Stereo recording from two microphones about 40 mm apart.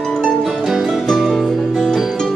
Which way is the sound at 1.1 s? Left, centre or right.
Centre.